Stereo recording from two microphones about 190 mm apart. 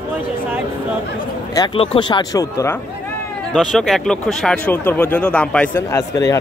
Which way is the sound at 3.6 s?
Centre (ahead or behind).